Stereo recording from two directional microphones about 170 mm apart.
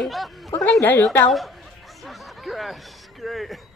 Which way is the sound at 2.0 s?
Centre (ahead or behind).